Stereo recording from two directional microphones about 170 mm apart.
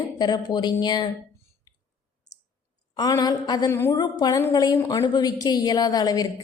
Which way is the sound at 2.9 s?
25° left (ahead or behind).